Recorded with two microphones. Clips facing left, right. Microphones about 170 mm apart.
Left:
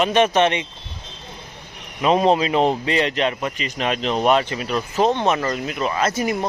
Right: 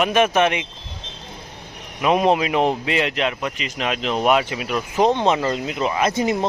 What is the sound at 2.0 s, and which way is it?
A man's voice, 5° right (ahead or behind).